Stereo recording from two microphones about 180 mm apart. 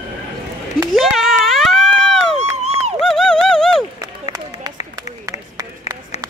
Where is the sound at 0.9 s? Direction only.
Centre (ahead or behind).